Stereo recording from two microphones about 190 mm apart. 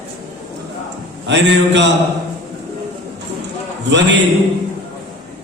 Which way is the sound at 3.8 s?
70° right (ahead or behind).